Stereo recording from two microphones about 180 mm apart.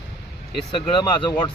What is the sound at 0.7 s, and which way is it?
Speech, 25° left (ahead or behind).